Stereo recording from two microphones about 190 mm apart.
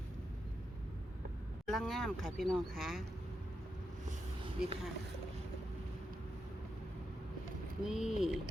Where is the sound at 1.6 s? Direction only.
Centre (ahead or behind).